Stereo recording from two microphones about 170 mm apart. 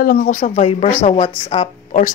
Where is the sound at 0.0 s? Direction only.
60° left (ahead or behind).